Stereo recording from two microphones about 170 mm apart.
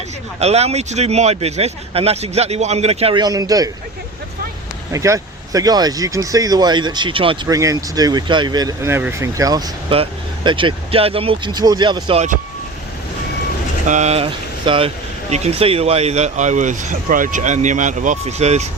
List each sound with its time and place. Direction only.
0.3 s speech: 40° right (ahead or behind)
3.2 s speech: 20° right (ahead or behind)
4.9 s speech: 20° right (ahead or behind)
7.4 s speech: 20° right (ahead or behind)
9.9 s speech: 30° right (ahead or behind)
13.8 s speech: 45° right (ahead or behind)